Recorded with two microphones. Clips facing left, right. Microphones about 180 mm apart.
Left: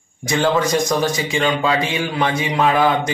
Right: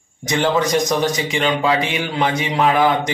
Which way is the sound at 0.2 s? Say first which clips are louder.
Even; 20° right (ahead or behind).